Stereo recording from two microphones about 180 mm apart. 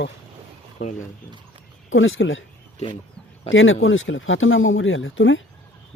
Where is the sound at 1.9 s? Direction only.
90° left.